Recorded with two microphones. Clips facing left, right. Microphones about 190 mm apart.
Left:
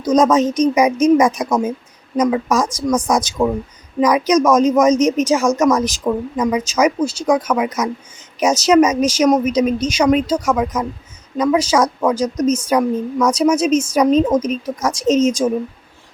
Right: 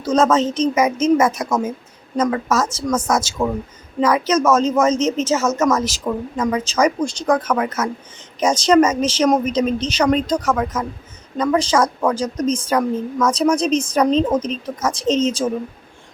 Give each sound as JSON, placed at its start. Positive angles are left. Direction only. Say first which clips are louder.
{"t": 0.0, "sound": "speech", "louder": "left 3 dB", "side_deg": 10}